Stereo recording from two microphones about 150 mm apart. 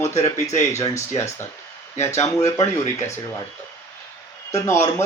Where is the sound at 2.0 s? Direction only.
50° left (ahead or behind).